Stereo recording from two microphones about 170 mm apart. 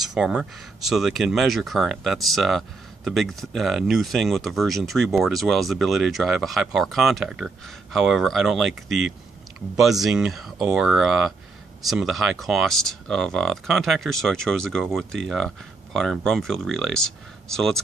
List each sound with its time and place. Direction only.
0.0 s speech: centre (ahead or behind)